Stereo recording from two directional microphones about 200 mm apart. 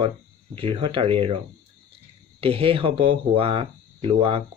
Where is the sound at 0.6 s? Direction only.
25° right (ahead or behind).